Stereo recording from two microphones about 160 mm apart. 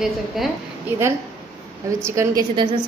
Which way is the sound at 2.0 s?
15° right (ahead or behind).